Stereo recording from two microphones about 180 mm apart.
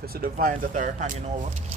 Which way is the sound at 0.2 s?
50° right (ahead or behind).